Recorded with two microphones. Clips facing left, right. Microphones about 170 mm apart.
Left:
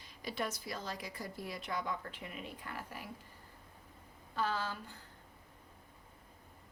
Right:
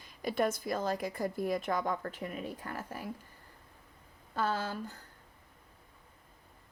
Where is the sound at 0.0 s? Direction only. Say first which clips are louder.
Right 8 dB; 50° right (ahead or behind).